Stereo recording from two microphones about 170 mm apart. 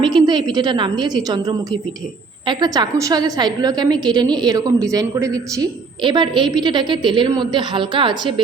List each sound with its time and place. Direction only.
0.0 s a woman's voice: 25° right (ahead or behind)